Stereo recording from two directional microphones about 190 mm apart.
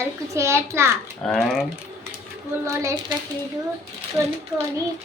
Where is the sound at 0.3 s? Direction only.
15° right (ahead or behind).